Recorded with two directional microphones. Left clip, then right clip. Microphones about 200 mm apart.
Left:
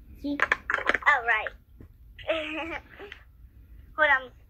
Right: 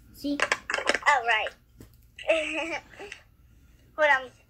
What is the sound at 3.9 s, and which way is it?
Speech, 10° right (ahead or behind).